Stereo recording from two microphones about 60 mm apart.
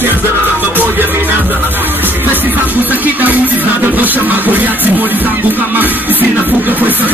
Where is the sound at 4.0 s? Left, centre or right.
Right.